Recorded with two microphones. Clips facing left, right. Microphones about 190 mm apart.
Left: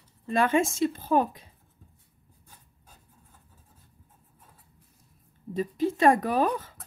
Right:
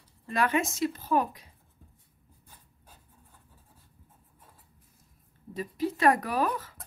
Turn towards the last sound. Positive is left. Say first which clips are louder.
# left 4 dB
turn(degrees=25)  # may be behind; listen again after turning